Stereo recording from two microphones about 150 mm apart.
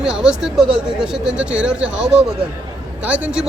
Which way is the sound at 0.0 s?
5° right (ahead or behind).